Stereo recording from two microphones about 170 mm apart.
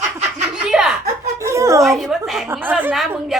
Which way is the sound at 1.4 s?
20° right (ahead or behind).